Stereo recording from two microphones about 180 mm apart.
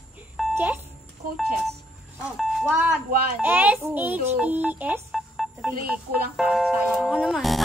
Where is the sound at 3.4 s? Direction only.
10° right (ahead or behind).